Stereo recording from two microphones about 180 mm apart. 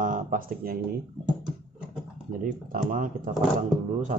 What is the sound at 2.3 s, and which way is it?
Speech, 50° right (ahead or behind).